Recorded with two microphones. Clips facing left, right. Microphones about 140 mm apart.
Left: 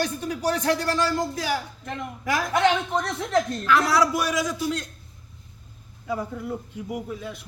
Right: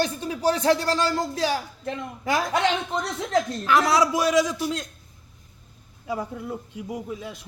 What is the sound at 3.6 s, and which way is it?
A man's voice, 20° right (ahead or behind).